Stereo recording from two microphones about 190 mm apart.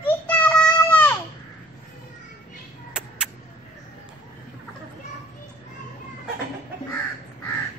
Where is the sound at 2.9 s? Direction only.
5° right (ahead or behind).